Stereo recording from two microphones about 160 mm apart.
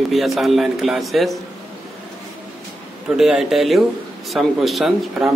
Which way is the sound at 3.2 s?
Centre (ahead or behind).